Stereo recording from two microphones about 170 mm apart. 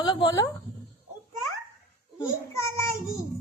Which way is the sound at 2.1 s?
15° left (ahead or behind).